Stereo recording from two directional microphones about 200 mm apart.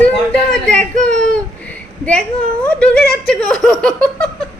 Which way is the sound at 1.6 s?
5° left (ahead or behind).